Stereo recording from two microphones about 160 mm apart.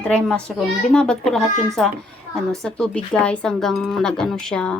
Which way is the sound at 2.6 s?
5° left (ahead or behind).